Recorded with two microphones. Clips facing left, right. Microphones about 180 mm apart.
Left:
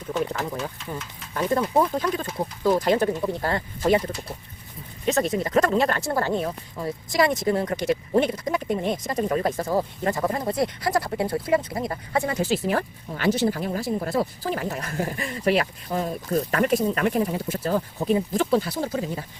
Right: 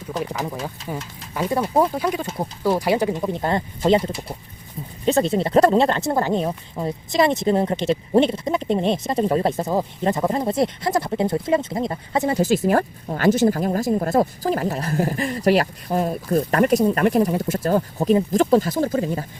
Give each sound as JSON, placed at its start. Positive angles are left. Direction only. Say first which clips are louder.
{"t": 0.1, "sound": "speech", "louder": "left 1 dB", "side_deg": -35}
{"t": 1.3, "sound": "speech", "louder": "right 1 dB", "side_deg": -10}
{"t": 2.6, "sound": "speech", "louder": "right 1 dB", "side_deg": -10}
{"t": 12.4, "sound": "speech", "louder": "right 5 dB", "side_deg": -45}